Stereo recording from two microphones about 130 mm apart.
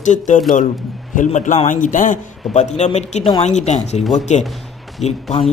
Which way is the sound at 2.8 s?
60° left (ahead or behind).